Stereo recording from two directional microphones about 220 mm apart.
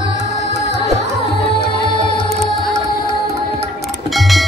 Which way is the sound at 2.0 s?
20° left (ahead or behind).